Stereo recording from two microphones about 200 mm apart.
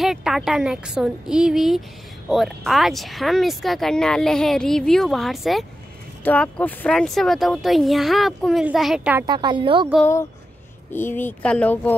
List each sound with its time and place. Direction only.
0.0 s speech: centre (ahead or behind)
9.2 s speech: 20° right (ahead or behind)
10.9 s speech: 10° left (ahead or behind)